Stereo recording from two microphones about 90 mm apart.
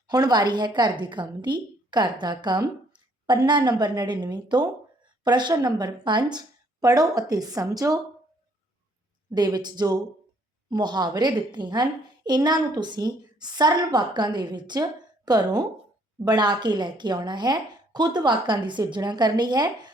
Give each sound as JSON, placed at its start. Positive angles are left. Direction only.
{"t": 0.1, "sound": "a woman's voice", "side_deg": -50}
{"t": 9.3, "sound": "a woman's voice", "side_deg": -50}